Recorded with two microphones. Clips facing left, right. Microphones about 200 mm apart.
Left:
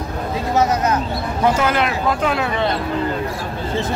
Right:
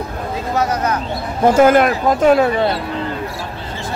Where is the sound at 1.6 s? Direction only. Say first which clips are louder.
Right 8 dB; 50° right (ahead or behind).